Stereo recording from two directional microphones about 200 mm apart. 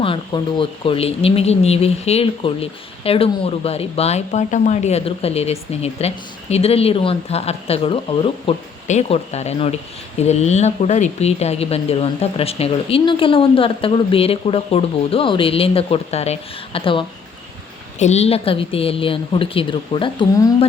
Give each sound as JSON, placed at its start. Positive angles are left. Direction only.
{"t": 0.0, "sound": "speech", "side_deg": 25}